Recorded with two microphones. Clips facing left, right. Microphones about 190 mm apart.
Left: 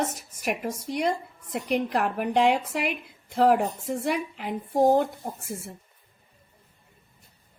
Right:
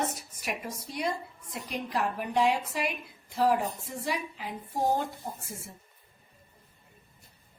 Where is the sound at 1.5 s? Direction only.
60° left (ahead or behind).